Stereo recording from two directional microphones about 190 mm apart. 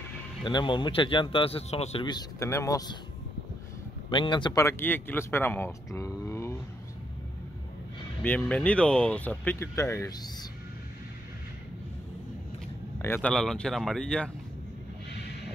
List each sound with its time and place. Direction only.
0.4 s a man's voice: 25° left (ahead or behind)
4.1 s speech: 25° left (ahead or behind)
8.2 s speech: 10° left (ahead or behind)
13.0 s speech: 10° left (ahead or behind)